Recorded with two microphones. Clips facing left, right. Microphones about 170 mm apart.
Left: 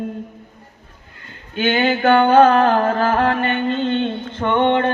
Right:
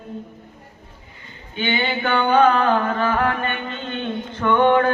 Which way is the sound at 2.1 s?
45° left (ahead or behind).